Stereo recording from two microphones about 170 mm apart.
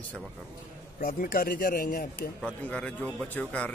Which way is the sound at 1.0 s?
55° left (ahead or behind).